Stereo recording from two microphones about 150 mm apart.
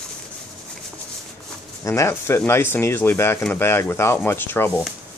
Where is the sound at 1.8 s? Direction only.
20° left (ahead or behind).